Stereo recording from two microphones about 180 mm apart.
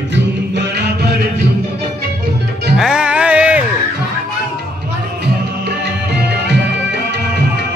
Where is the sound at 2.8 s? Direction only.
5° right (ahead or behind).